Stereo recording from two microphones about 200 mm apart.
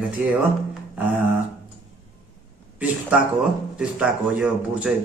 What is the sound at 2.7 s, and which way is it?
A man's voice, 5° right (ahead or behind).